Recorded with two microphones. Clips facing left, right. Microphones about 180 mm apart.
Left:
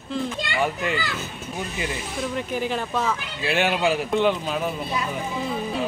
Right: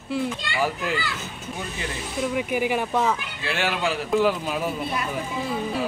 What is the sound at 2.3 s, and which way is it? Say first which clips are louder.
Speech: right 3 dB; 10° right (ahead or behind).